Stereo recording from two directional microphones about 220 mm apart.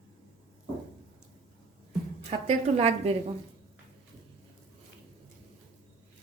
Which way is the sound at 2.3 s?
30° right (ahead or behind).